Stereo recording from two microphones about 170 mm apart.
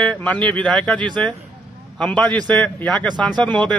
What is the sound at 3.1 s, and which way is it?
Speech, 25° right (ahead or behind).